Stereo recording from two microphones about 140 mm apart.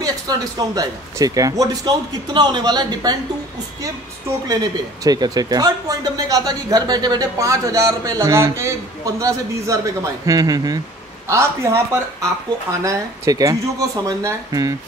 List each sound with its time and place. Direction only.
0.0 s speech: 25° right (ahead or behind)
4.5 s speech: 25° right (ahead or behind)